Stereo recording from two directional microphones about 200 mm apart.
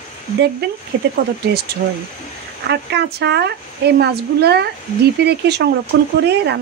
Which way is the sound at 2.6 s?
55° right (ahead or behind).